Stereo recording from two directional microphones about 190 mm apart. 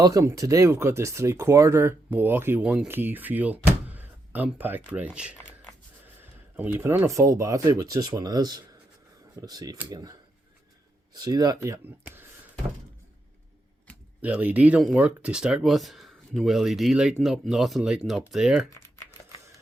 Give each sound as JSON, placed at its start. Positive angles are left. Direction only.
{"t": 0.0, "sound": "speech", "side_deg": -15}
{"t": 6.6, "sound": "speech", "side_deg": -10}
{"t": 14.2, "sound": "speech", "side_deg": -5}